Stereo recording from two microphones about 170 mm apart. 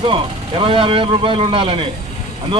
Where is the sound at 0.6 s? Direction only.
30° right (ahead or behind).